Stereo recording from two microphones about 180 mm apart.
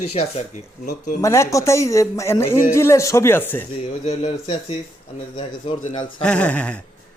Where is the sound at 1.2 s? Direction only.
15° left (ahead or behind).